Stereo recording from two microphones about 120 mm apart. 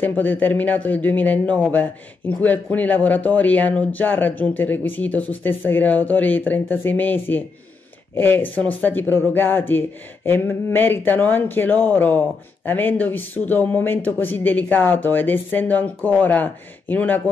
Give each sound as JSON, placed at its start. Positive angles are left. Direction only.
{"t": 0.0, "sound": "a man's voice", "side_deg": 15}